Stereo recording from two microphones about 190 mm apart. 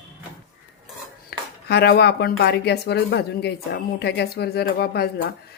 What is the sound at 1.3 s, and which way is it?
Speech, 60° left (ahead or behind).